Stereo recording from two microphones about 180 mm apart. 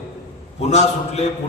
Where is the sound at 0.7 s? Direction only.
40° left (ahead or behind).